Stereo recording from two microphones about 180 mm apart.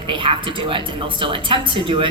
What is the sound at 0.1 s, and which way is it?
A woman's voice, 25° right (ahead or behind).